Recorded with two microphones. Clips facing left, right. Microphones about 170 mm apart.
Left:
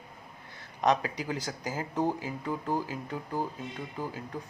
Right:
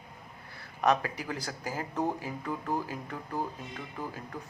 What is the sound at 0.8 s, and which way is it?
Speech, 15° left (ahead or behind).